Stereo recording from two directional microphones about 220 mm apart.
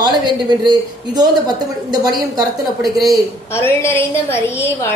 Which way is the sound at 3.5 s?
10° left (ahead or behind).